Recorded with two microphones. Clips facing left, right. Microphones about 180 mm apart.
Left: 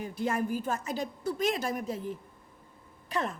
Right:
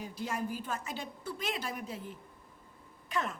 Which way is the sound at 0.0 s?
55° left (ahead or behind).